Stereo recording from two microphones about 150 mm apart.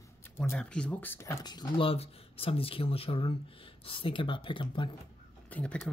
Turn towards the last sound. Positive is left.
turn(degrees=10)  # may be behind; listen again after turning